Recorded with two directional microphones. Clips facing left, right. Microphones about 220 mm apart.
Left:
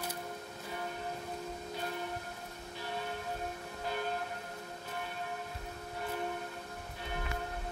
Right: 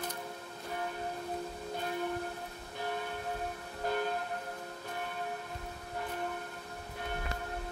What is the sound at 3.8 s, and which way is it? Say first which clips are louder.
Train: right 5 dB; 50° right (ahead or behind).